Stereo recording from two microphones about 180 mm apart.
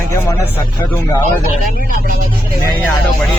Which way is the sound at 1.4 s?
50° right (ahead or behind).